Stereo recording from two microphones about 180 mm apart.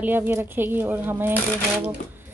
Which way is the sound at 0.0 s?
10° right (ahead or behind).